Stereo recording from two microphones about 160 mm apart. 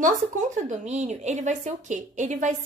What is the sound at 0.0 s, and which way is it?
A woman's voice, 50° right (ahead or behind).